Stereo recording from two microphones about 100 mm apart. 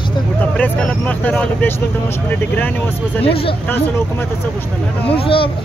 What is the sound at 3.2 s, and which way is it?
Speech, 70° left (ahead or behind).